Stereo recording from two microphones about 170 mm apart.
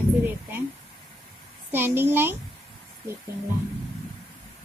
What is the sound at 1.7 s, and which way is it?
Speech, 10° right (ahead or behind).